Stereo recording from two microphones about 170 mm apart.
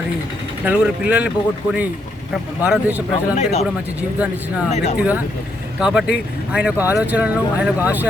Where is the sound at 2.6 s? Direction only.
10° right (ahead or behind).